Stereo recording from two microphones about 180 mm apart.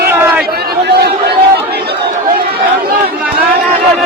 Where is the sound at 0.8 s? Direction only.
65° right (ahead or behind).